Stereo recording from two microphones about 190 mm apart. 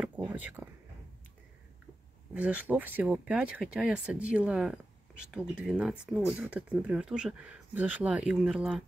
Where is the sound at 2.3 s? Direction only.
5° right (ahead or behind).